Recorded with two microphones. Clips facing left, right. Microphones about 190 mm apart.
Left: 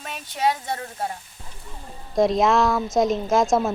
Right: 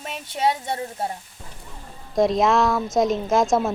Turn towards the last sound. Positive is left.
turn(degrees=0)  # may be behind; listen again after turning